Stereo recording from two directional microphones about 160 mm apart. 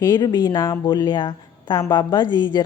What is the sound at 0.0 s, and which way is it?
Speech, 25° left (ahead or behind).